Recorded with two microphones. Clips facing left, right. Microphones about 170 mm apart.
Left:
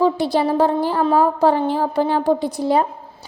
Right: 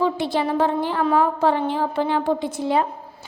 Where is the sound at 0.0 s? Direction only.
40° left (ahead or behind).